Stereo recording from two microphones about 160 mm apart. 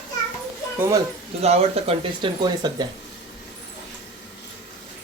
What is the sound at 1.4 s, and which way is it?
Speech, 40° right (ahead or behind).